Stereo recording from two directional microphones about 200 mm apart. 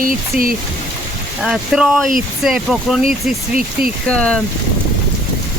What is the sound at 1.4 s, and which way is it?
Speech, centre (ahead or behind).